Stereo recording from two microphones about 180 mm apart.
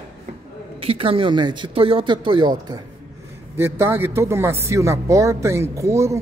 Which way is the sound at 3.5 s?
15° right (ahead or behind).